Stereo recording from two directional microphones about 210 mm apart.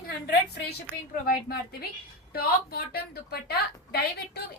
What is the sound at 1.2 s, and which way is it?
A woman's voice, 45° left (ahead or behind).